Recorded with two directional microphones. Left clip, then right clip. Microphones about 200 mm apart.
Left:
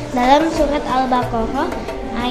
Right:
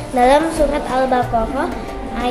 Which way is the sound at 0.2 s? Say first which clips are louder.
Right 1 dB; 15° right (ahead or behind).